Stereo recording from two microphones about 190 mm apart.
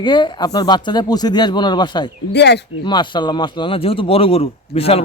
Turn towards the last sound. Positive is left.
turn(degrees=30)  # may be behind; listen again after turning